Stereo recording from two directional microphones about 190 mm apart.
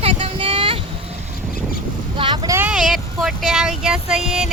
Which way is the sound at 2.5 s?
5° right (ahead or behind).